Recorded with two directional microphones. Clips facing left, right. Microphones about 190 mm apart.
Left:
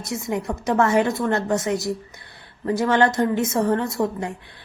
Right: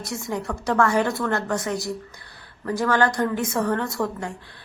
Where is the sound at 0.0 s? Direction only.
20° left (ahead or behind).